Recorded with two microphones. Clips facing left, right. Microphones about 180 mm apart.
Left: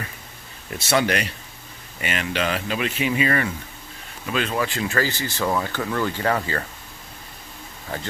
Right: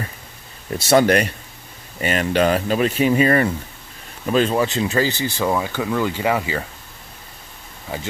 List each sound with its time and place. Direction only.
0.7 s speech: 40° right (ahead or behind); by 6.6 s 10° right (ahead or behind)